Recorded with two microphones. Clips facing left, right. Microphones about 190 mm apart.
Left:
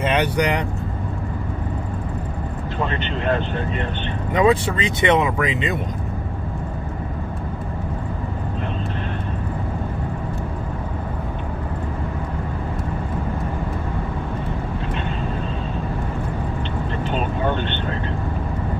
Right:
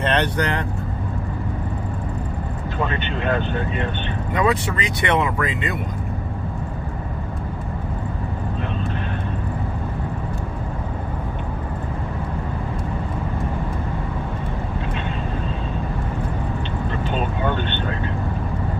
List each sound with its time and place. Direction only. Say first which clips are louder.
0.0 s speech: left 1 dB; 10° left (ahead or behind)
4.3 s speech: left 4 dB; 25° left (ahead or behind)